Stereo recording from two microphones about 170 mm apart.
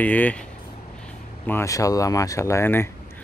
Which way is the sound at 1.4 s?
15° left (ahead or behind).